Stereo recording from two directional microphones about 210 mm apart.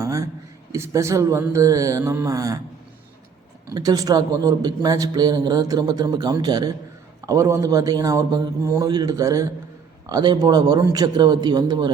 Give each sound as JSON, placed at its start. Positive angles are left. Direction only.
{"t": 0.0, "sound": "a sound", "side_deg": -15}
{"t": 0.7, "sound": "a man's voice", "side_deg": -15}
{"t": 3.7, "sound": "a man's voice", "side_deg": -15}